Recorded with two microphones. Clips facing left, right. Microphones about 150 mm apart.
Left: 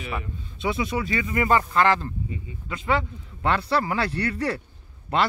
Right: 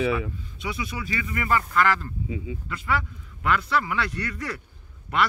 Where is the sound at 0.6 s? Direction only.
25° left (ahead or behind).